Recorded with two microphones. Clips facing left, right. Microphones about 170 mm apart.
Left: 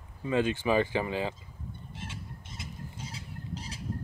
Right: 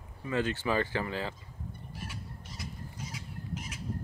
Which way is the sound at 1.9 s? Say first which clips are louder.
Left 1 dB; 25° left (ahead or behind).